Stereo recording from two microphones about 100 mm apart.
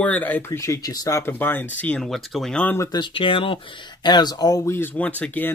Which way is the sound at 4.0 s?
45° left (ahead or behind).